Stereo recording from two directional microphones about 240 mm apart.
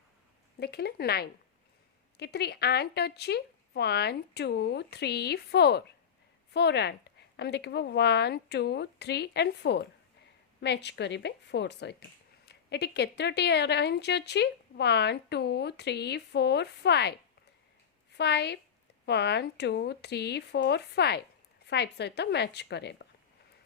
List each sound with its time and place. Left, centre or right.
0.6 s speech: left
18.2 s speech: left